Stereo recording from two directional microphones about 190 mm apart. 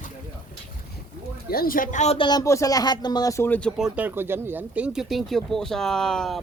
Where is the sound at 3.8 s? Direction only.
10° right (ahead or behind).